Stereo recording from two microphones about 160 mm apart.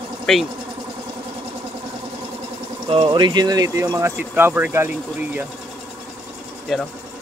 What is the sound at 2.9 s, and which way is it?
Speech, 30° right (ahead or behind).